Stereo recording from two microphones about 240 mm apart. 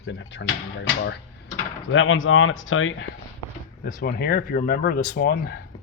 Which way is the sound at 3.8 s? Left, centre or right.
Left.